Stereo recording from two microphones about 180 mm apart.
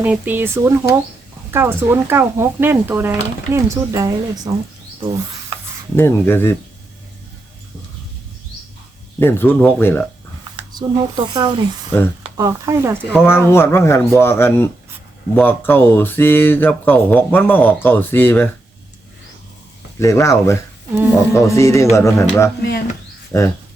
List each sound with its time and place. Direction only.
0.0 s speech: 10° right (ahead or behind)
5.5 s rub: 30° right (ahead or behind)
6.0 s speech: 10° left (ahead or behind)
9.1 s speech: 10° left (ahead or behind)
10.6 s speech: 25° right (ahead or behind)
13.1 s speech: 10° left (ahead or behind)
20.0 s speech: 15° left (ahead or behind)
20.9 s speech: 10° right (ahead or behind)
21.3 s speech: 15° left (ahead or behind)